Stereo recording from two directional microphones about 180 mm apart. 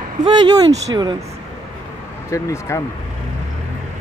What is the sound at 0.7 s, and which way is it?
Speech, 25° right (ahead or behind).